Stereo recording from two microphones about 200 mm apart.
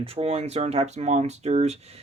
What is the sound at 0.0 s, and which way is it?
Speech, 30° right (ahead or behind).